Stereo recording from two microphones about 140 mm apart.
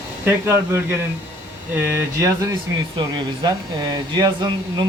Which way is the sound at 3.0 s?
35° right (ahead or behind).